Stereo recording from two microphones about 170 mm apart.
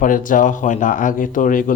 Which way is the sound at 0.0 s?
50° left (ahead or behind).